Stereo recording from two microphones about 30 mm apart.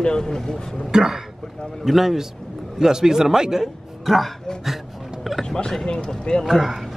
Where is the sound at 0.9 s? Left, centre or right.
Right.